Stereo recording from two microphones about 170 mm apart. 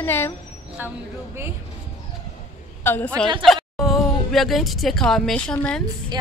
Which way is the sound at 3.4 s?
Centre (ahead or behind).